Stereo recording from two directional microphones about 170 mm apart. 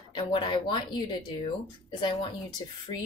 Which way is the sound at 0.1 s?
30° left (ahead or behind).